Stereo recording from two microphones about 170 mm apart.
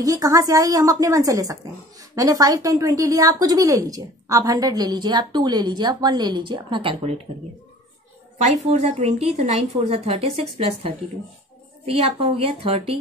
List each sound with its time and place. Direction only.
0.0 s speech: 20° right (ahead or behind)
8.4 s speech: 40° right (ahead or behind)